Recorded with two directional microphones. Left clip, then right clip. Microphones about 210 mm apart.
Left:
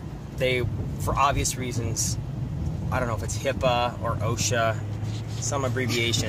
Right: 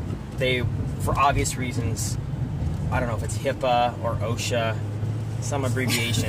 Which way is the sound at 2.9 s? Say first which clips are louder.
Even; 15° left (ahead or behind).